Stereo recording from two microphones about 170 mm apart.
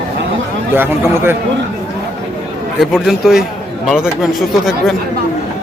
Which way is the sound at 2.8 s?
Centre (ahead or behind).